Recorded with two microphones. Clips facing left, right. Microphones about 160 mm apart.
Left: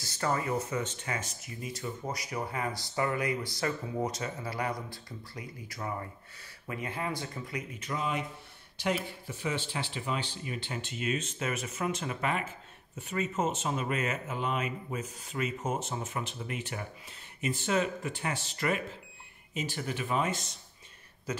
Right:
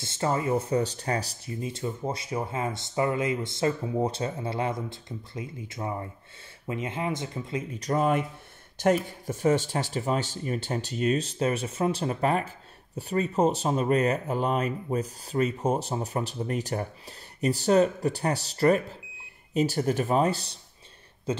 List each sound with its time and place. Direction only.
0.0 s speech: 25° right (ahead or behind)
7.8 s speech: 45° right (ahead or behind); by 21.4 s 25° right (ahead or behind)